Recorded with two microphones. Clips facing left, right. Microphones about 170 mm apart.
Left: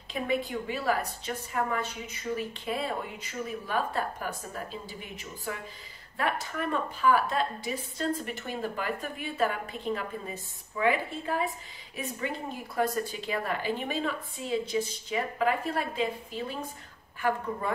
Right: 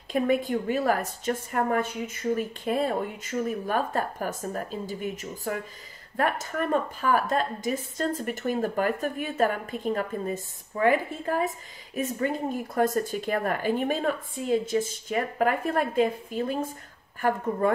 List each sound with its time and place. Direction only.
0.1 s speech: 45° right (ahead or behind)